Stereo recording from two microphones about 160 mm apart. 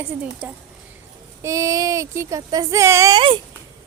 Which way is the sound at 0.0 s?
10° right (ahead or behind).